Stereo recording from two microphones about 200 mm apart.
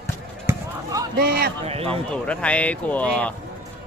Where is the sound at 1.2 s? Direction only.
50° right (ahead or behind).